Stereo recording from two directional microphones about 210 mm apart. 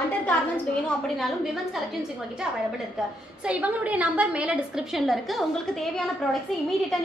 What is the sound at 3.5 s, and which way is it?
A woman's voice, 5° right (ahead or behind).